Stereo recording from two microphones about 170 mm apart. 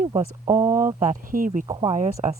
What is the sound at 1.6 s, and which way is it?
Speech, 20° right (ahead or behind).